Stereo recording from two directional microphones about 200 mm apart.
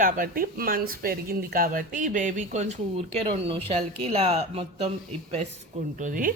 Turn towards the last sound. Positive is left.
turn(degrees=-40)  # may be behind; listen again after turning